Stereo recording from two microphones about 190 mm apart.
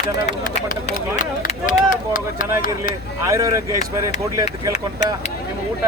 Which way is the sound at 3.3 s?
15° right (ahead or behind).